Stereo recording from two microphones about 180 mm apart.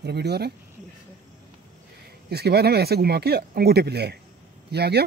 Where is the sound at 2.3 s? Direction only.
65° right (ahead or behind).